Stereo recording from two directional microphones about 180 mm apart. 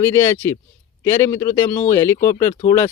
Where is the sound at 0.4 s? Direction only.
20° left (ahead or behind).